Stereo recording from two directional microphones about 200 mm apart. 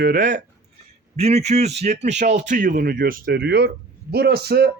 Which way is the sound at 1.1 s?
30° right (ahead or behind).